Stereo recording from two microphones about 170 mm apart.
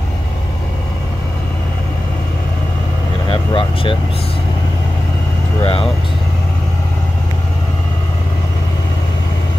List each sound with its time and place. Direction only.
3.3 s vehicle: 30° left (ahead or behind)
5.6 s vehicle: 35° left (ahead or behind)